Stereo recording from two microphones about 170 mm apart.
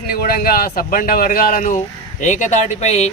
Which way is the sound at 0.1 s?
60° left (ahead or behind).